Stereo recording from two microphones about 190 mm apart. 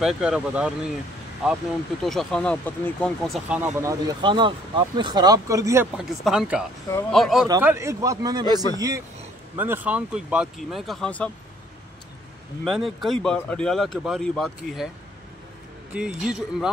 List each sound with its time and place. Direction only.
0.0 s speech: 5° right (ahead or behind)
5.9 s speech: 5° right (ahead or behind)
7.4 s a man's voice: 15° right (ahead or behind)
9.6 s speech: 10° right (ahead or behind)
12.6 s speech: centre (ahead or behind)
15.9 s speech: 5° right (ahead or behind)